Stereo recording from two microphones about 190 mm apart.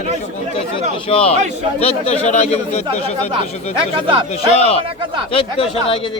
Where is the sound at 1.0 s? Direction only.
30° left (ahead or behind).